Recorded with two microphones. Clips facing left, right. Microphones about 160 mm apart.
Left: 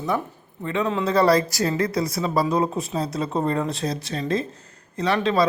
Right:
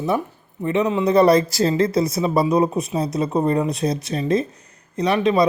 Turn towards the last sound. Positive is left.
turn(degrees=-20)  # may be behind; listen again after turning